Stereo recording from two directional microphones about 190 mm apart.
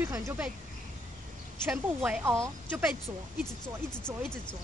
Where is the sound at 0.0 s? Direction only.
15° right (ahead or behind).